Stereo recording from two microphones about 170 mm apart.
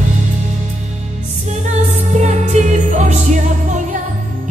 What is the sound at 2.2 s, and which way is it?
Music, 45° right (ahead or behind).